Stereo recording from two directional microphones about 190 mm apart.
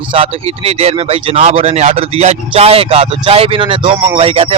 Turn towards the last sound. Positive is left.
turn(degrees=-30)  # may be behind; listen again after turning